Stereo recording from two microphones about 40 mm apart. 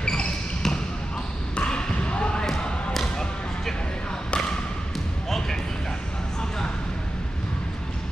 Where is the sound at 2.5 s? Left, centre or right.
Left.